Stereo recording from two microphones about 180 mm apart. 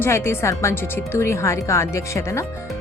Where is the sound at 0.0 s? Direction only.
15° left (ahead or behind).